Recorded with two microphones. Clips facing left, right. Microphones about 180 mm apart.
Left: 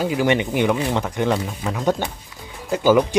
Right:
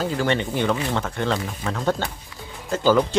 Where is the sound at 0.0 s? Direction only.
15° left (ahead or behind).